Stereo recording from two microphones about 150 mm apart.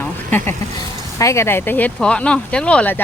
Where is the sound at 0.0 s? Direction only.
15° left (ahead or behind).